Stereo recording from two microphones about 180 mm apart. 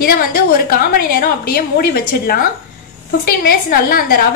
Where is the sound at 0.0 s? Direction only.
55° left (ahead or behind).